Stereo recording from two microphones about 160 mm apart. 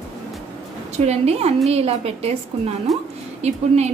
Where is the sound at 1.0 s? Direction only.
40° right (ahead or behind).